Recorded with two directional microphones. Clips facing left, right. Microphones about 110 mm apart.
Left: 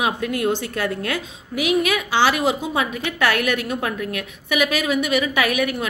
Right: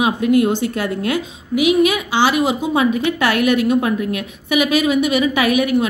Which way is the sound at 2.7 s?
20° right (ahead or behind).